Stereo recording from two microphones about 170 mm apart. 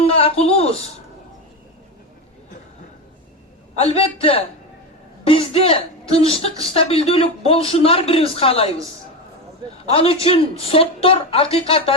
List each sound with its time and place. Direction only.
0.0 s a sound: 35° left (ahead or behind)
3.8 s speech: 35° left (ahead or behind)
9.9 s speech: 35° left (ahead or behind)